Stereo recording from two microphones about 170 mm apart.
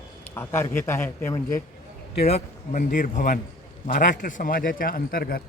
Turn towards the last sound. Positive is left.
turn(degrees=60)  # may be behind; listen again after turning